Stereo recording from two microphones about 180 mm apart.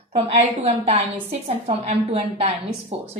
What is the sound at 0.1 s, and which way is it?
A woman's voice, 35° right (ahead or behind).